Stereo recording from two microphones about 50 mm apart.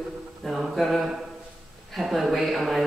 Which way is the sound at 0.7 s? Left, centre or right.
Centre.